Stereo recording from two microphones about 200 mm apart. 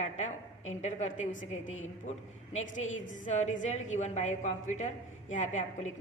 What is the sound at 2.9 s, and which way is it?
A woman's voice, 40° left (ahead or behind).